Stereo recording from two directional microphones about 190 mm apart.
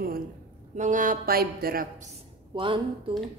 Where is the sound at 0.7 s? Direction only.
40° right (ahead or behind).